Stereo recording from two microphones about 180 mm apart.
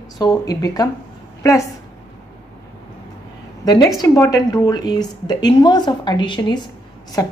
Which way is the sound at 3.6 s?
20° left (ahead or behind).